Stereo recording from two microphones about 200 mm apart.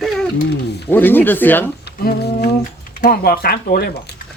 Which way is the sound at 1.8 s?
50° left (ahead or behind).